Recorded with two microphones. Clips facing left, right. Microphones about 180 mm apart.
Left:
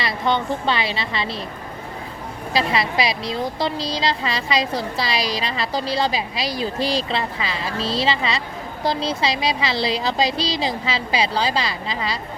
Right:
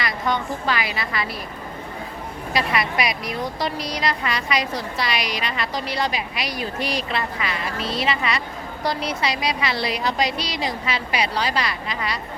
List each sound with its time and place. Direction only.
0.0 s a woman's voice: 25° left (ahead or behind)
2.5 s a woman's voice: 25° left (ahead or behind)